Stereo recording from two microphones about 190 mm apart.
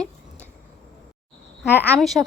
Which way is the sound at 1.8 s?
5° left (ahead or behind).